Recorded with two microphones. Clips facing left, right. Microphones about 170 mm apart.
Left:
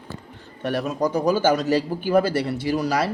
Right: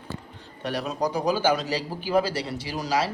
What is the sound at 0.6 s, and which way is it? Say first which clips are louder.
A man's voice: left 4 dB; 50° left (ahead or behind).